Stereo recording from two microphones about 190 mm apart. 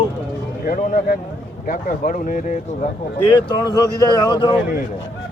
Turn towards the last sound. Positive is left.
turn(degrees=25)  # may be behind; listen again after turning